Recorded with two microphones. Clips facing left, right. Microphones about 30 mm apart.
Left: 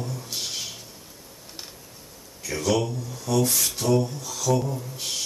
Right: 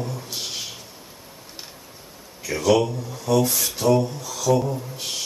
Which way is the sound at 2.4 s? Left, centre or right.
Centre.